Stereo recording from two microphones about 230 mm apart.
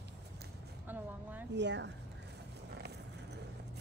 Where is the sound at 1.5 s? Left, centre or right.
Right.